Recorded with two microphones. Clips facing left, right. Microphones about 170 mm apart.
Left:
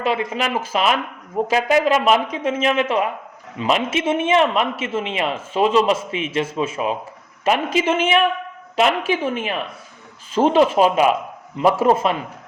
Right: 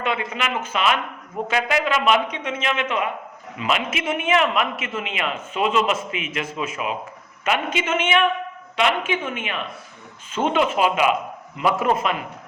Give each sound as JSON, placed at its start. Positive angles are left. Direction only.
{"t": 0.0, "sound": "a man's voice", "side_deg": 35}